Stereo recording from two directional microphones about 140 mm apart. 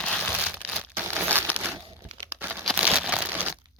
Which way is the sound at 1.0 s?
15° right (ahead or behind).